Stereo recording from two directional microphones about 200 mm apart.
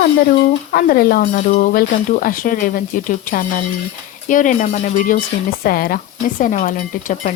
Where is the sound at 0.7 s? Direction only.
45° left (ahead or behind).